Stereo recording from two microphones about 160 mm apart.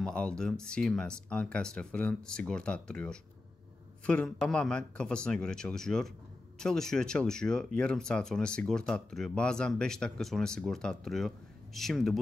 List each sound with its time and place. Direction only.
0.0 s a man's voice: 5° left (ahead or behind)